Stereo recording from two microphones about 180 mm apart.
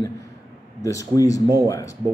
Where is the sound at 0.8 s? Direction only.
20° left (ahead or behind).